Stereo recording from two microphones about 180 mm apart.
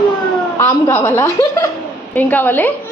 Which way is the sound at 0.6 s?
10° left (ahead or behind).